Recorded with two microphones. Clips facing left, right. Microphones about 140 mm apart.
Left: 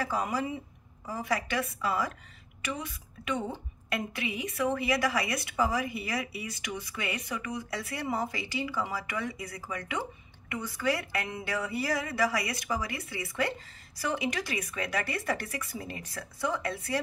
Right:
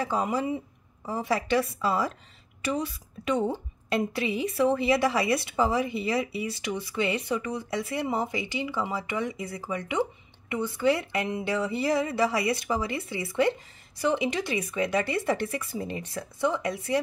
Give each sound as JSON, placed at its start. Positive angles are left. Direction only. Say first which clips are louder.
{"t": 0.0, "sound": "a woman's voice", "louder": "right 4 dB", "side_deg": -25}